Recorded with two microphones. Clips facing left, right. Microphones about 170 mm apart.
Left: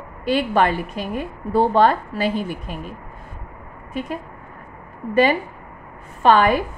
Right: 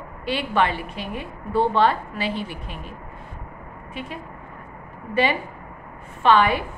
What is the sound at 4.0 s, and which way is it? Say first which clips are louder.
Speech: left 7 dB; 45° left (ahead or behind).